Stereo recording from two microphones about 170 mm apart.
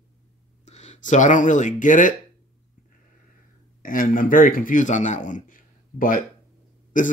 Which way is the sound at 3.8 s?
55° left (ahead or behind).